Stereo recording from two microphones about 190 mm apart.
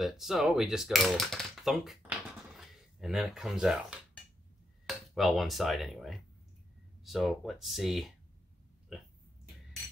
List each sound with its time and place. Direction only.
0.0 s speech: centre (ahead or behind)